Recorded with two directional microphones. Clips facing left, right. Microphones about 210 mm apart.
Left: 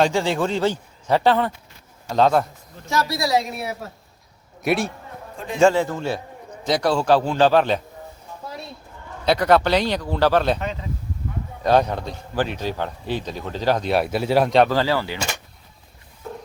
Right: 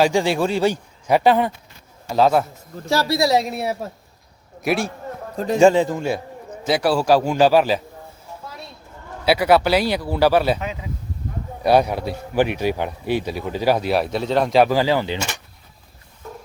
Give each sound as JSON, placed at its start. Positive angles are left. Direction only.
{"t": 0.0, "sound": "speech", "side_deg": -15}
{"t": 2.8, "sound": "a woman's voice", "side_deg": -30}
{"t": 4.6, "sound": "a man's voice", "side_deg": 0}
{"t": 5.5, "sound": "speech", "side_deg": -15}
{"t": 9.2, "sound": "speech", "side_deg": -5}
{"t": 14.7, "sound": "speech", "side_deg": -15}